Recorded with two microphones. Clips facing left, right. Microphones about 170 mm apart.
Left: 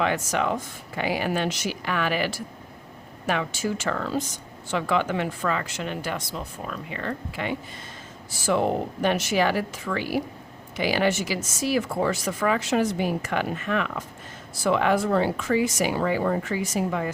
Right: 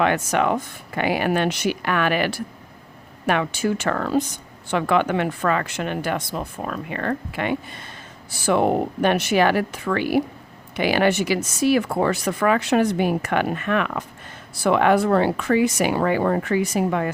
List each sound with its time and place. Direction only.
0.0 s speech: 65° right (ahead or behind)